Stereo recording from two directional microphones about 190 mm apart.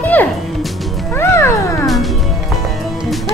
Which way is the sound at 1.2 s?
15° left (ahead or behind).